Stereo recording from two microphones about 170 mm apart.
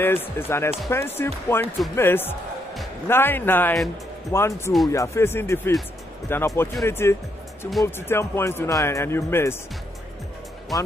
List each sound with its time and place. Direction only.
0.0 s speech: 15° left (ahead or behind)